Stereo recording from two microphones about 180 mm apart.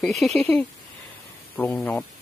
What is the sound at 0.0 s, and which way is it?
Speech, centre (ahead or behind).